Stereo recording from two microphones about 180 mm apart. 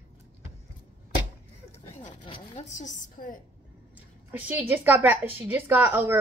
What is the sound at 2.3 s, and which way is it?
A woman's voice, 40° left (ahead or behind).